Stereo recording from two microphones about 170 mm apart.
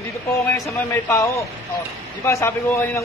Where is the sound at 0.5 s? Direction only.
15° left (ahead or behind).